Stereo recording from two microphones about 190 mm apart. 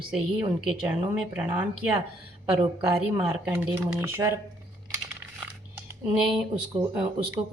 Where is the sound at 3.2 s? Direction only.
5° right (ahead or behind).